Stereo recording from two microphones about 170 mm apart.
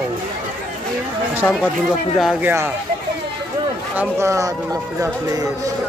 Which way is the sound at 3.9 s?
15° right (ahead or behind).